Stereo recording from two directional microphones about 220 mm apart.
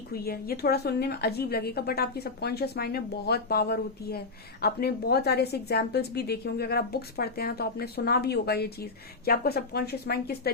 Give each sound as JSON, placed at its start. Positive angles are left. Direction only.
{"t": 0.1, "sound": "a woman's voice", "side_deg": 45}